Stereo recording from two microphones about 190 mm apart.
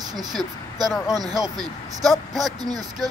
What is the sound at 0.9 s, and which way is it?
Speech, centre (ahead or behind).